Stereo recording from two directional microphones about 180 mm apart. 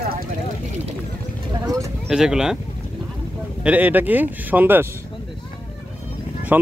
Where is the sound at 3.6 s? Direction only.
10° right (ahead or behind).